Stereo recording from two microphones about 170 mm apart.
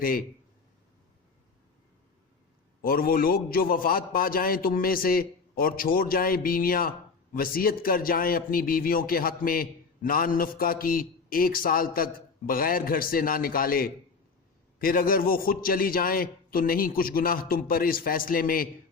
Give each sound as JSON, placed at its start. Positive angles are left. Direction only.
{"t": 0.0, "sound": "a man's voice", "side_deg": 60}
{"t": 2.8, "sound": "a man's voice", "side_deg": 60}